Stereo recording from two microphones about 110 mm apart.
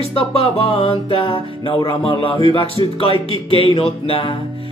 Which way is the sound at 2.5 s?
60° left (ahead or behind).